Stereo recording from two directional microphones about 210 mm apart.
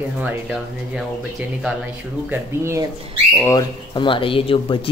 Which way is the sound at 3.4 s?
20° left (ahead or behind).